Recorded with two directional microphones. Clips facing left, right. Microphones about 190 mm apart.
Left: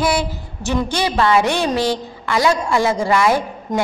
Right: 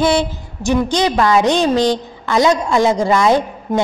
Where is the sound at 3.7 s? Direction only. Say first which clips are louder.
Right 3 dB; 10° right (ahead or behind).